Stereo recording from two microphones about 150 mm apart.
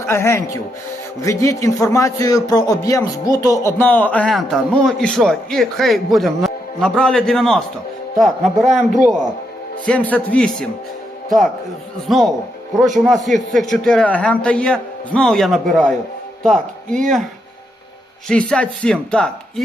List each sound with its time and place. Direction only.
0.0 s a man's voice: 20° left (ahead or behind); by 8.8 s centre (ahead or behind)
9.8 s speech: 10° left (ahead or behind)
12.0 s a man's voice: centre (ahead or behind)
18.3 s a man's voice: 5° left (ahead or behind)